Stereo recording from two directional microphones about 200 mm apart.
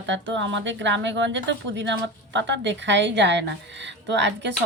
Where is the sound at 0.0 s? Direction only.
65° right (ahead or behind).